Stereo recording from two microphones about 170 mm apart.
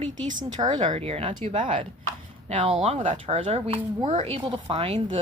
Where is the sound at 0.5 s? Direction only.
25° right (ahead or behind).